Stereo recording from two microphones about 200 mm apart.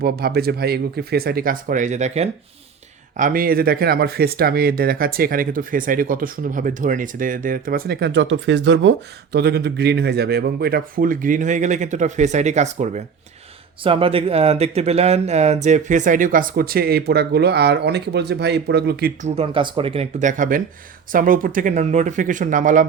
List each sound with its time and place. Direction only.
0.0 s speech: 50° right (ahead or behind); by 2.3 s 35° right (ahead or behind)
3.2 s speech: 45° right (ahead or behind)
19.4 s speech: 25° right (ahead or behind); by 22.9 s 40° right (ahead or behind)